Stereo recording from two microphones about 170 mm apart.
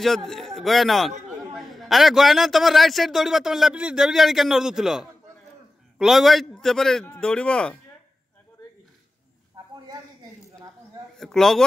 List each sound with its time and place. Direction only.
0.0 s a man's voice: centre (ahead or behind)
9.6 s a sound: 20° right (ahead or behind)
11.1 s a man's voice: centre (ahead or behind)